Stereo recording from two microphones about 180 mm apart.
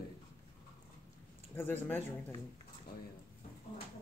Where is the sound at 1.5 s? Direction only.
10° left (ahead or behind).